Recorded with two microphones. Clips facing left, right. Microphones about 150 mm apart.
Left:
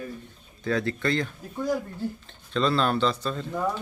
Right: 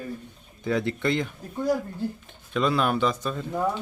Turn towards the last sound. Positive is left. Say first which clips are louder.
# right 1 dB
turn(degrees=-10)  # may be behind; listen again after turning